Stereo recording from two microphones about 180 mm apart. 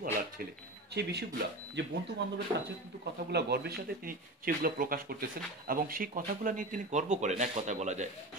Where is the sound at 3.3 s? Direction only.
65° right (ahead or behind).